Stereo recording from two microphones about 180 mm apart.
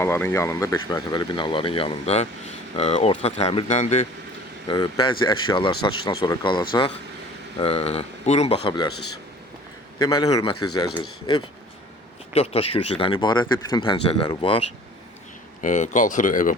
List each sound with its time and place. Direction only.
0.0 s speech: 10° left (ahead or behind); by 4.0 s 40° left (ahead or behind)
4.7 s speech: 25° left (ahead or behind)
8.6 s speech: 25° left (ahead or behind)
10.0 s speech: 25° left (ahead or behind)
15.6 s speech: 45° left (ahead or behind)